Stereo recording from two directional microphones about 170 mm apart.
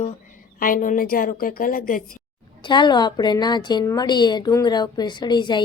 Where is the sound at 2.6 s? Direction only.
25° left (ahead or behind).